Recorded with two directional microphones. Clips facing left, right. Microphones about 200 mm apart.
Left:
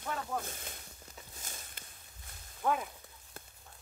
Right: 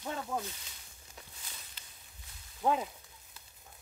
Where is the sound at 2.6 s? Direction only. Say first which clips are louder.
Right 2 dB; 20° right (ahead or behind).